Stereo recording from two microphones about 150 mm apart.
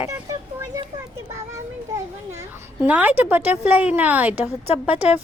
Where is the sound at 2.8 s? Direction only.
10° right (ahead or behind).